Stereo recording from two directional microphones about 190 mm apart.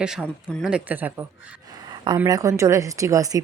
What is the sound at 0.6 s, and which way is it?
Speech, 10° right (ahead or behind).